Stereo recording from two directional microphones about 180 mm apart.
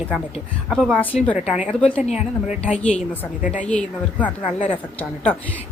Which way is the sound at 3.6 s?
5° left (ahead or behind).